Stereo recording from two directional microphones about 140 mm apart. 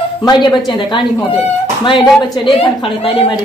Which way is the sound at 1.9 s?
35° left (ahead or behind).